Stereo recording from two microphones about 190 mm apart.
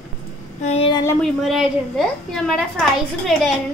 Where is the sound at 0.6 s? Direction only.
35° left (ahead or behind).